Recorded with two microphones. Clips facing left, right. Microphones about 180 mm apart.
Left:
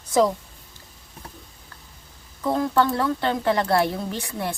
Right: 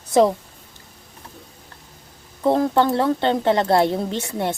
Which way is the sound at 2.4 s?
35° right (ahead or behind).